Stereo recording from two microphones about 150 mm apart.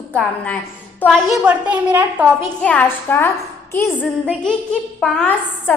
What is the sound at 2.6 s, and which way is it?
Speech, 10° left (ahead or behind).